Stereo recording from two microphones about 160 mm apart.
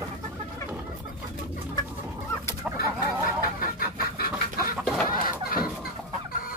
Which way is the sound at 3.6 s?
65° left (ahead or behind).